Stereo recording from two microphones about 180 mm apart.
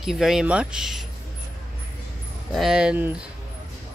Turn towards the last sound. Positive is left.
turn(degrees=-5)  # may be behind; listen again after turning